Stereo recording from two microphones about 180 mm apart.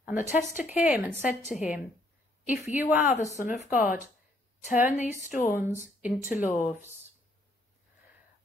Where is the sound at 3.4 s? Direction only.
45° left (ahead or behind).